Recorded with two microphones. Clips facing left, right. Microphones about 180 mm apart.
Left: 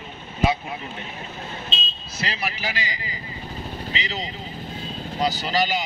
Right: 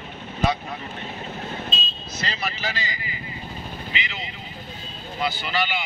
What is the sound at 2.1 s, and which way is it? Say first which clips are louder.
Speech: left 1 dB; 10° left (ahead or behind).